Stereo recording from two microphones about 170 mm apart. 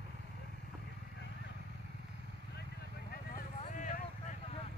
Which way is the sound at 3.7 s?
50° left (ahead or behind).